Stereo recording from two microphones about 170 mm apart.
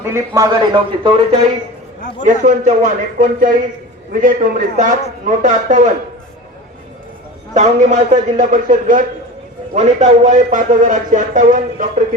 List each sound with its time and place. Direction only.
0.0 s speech: 15° right (ahead or behind)
2.2 s a man's voice: 50° right (ahead or behind)
7.5 s a man's voice: 45° right (ahead or behind)